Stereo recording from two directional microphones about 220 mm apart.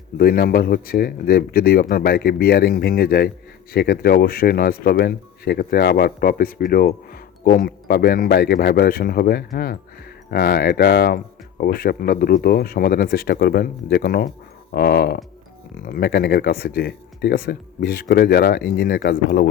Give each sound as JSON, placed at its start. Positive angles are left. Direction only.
{"t": 0.2, "sound": "speech", "side_deg": 40}